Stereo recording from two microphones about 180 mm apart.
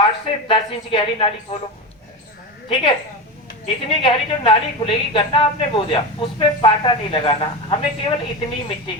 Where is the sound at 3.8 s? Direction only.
30° left (ahead or behind).